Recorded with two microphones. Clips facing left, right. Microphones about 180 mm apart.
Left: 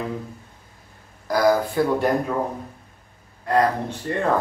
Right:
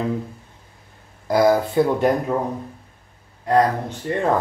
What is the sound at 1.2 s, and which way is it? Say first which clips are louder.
Speech: right 2 dB; 25° right (ahead or behind).